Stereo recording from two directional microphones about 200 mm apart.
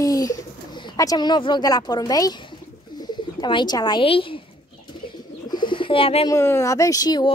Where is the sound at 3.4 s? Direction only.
20° left (ahead or behind).